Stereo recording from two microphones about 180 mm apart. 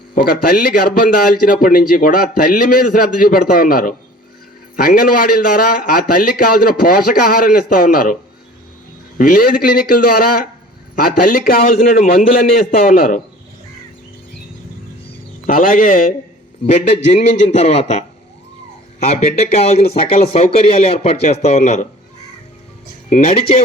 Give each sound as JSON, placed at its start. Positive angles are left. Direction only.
{"t": 0.1, "sound": "a man's voice", "side_deg": 55}
{"t": 9.1, "sound": "a man's voice", "side_deg": 55}
{"t": 15.4, "sound": "a man's voice", "side_deg": 50}
{"t": 23.0, "sound": "speech", "side_deg": 35}